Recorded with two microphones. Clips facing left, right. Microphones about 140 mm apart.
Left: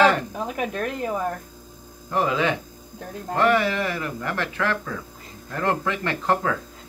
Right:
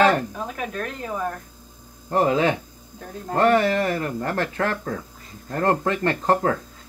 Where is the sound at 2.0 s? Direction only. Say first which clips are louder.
Right 3 dB; 40° right (ahead or behind).